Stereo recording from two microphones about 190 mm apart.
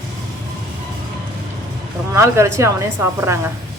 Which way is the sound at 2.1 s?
15° right (ahead or behind).